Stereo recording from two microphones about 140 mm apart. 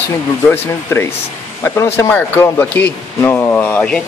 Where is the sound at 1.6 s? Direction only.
15° left (ahead or behind).